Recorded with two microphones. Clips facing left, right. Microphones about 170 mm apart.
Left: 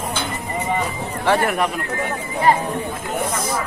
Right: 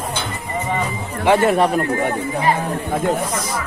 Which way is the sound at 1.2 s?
15° right (ahead or behind).